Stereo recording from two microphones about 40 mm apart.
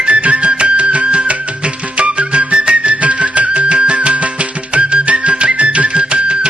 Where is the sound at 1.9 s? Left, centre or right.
Right.